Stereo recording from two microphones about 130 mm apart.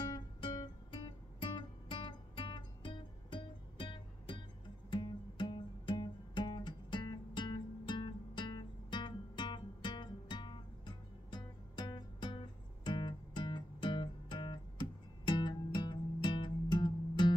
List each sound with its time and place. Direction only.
0.1 s guitar: 35° left (ahead or behind)
4.9 s music: 35° left (ahead or behind)